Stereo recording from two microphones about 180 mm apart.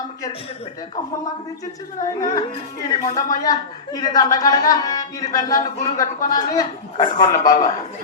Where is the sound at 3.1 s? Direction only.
20° left (ahead or behind).